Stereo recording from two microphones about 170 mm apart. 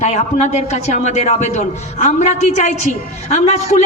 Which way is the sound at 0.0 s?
40° left (ahead or behind).